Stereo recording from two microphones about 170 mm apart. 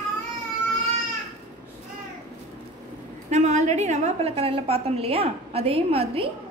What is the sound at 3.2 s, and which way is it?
A woman's voice, 40° right (ahead or behind).